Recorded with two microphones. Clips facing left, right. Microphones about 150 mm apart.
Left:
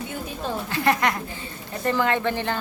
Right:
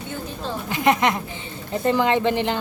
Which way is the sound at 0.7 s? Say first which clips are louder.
Right 4 dB; 20° right (ahead or behind).